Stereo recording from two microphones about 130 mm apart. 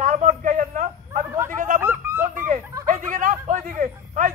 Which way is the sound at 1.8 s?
15° right (ahead or behind).